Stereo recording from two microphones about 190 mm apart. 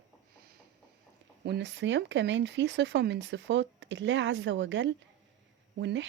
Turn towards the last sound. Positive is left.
turn(degrees=-65)  # may be behind; listen again after turning